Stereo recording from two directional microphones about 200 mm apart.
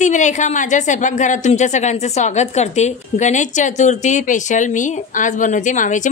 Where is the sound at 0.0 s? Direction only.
35° left (ahead or behind).